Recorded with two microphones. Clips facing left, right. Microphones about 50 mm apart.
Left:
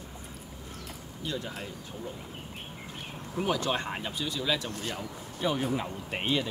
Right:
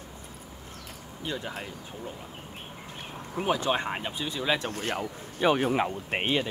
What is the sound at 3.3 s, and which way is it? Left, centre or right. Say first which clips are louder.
Speech: right 2 dB; right.